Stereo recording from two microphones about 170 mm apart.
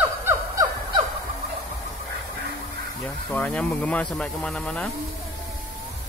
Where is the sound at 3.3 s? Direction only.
10° left (ahead or behind).